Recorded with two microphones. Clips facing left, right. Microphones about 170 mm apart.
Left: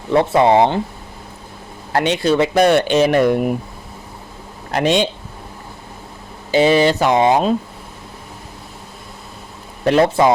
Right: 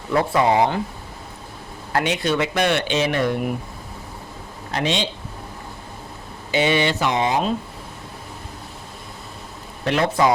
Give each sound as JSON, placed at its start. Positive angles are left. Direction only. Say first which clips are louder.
{"t": 0.1, "sound": "speech", "louder": "left 5 dB", "side_deg": 25}
{"t": 1.9, "sound": "speech", "louder": "left 5 dB", "side_deg": 30}
{"t": 4.7, "sound": "speech", "louder": "left 7 dB", "side_deg": 50}
{"t": 6.5, "sound": "speech", "louder": "left 7 dB", "side_deg": 35}
{"t": 7.1, "sound": "speech", "louder": "left 7 dB", "side_deg": 55}
{"t": 9.8, "sound": "speech", "louder": "left 6 dB", "side_deg": 35}